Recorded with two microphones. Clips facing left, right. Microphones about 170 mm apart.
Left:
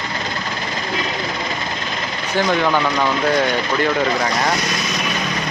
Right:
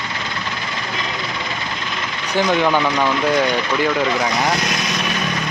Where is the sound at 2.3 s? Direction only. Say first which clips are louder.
Right 1 dB; 15° right (ahead or behind).